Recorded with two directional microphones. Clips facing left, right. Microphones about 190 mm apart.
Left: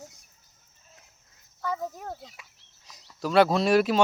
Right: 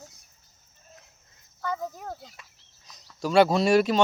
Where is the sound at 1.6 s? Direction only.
5° left (ahead or behind).